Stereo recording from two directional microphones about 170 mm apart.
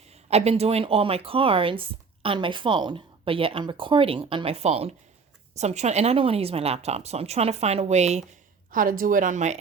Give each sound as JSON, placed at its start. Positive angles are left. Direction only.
{"t": 0.1, "sound": "speech", "side_deg": -40}
{"t": 8.7, "sound": "speech", "side_deg": -55}